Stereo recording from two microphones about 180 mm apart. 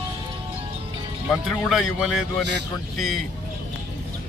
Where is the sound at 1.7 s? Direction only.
Centre (ahead or behind).